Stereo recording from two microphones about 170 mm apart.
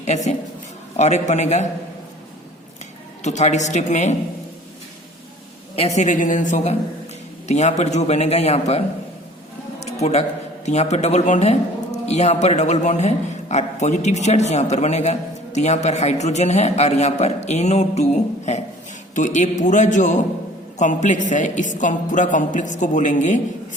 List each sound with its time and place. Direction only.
0.0 s a man's voice: 40° left (ahead or behind)
3.2 s a woman's voice: 45° left (ahead or behind)
5.7 s a woman's voice: 40° left (ahead or behind)
9.8 s a sound: 40° left (ahead or behind)
10.7 s a man's voice: 40° left (ahead or behind)